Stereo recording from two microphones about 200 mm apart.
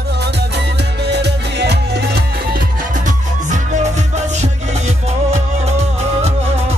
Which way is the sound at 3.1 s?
40° right (ahead or behind).